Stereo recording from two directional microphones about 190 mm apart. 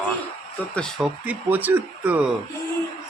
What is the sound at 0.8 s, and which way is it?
Speech, centre (ahead or behind).